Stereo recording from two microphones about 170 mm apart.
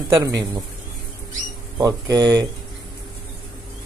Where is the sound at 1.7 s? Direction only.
20° right (ahead or behind).